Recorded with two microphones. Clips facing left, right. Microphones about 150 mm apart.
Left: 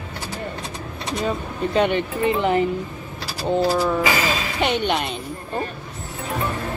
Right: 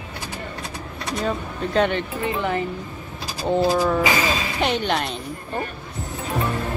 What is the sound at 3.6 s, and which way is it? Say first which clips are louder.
Speech: even; 15° right (ahead or behind).